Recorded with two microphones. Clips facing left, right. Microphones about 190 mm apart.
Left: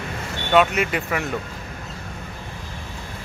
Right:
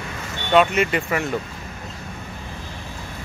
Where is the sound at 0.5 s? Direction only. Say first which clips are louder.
Right 1 dB; centre (ahead or behind).